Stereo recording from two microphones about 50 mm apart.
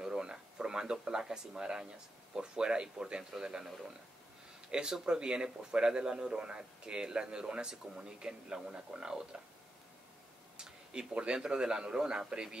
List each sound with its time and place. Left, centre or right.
0.0 s a sound: centre
2.3 s speech: centre
10.6 s speech: centre